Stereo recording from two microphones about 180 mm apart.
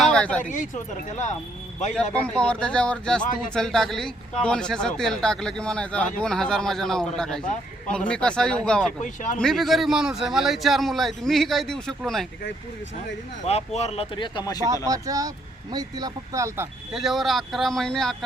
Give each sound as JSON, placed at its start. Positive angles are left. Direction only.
{"t": 0.0, "sound": "a sound", "side_deg": 5}
{"t": 0.4, "sound": "speech", "side_deg": 45}
{"t": 2.1, "sound": "speech", "side_deg": 5}
{"t": 9.0, "sound": "speech", "side_deg": 45}
{"t": 9.4, "sound": "speech", "side_deg": 0}
{"t": 13.4, "sound": "speech", "side_deg": 35}
{"t": 14.7, "sound": "speech", "side_deg": -20}
{"t": 16.9, "sound": "speech", "side_deg": 0}